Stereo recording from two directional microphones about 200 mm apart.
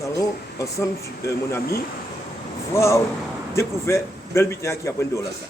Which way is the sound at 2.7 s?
15° left (ahead or behind).